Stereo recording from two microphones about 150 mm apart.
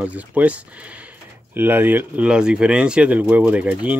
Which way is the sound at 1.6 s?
15° right (ahead or behind).